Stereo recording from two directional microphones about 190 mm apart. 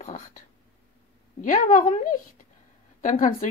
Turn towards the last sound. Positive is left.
turn(degrees=45)  # may be behind; listen again after turning